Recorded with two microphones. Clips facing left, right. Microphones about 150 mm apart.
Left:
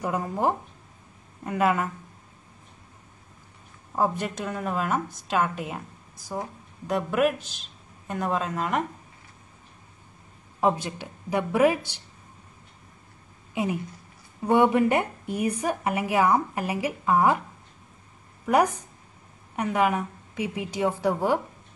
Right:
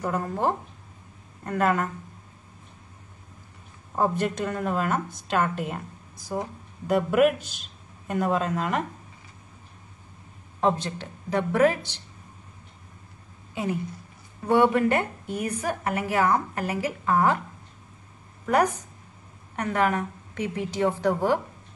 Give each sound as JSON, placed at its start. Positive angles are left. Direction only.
{"t": 0.0, "sound": "a woman's voice", "side_deg": 10}
{"t": 3.9, "sound": "a woman's voice", "side_deg": 0}
{"t": 10.6, "sound": "a woman's voice", "side_deg": 10}
{"t": 14.5, "sound": "a woman's voice", "side_deg": 15}
{"t": 18.4, "sound": "a woman's voice", "side_deg": 10}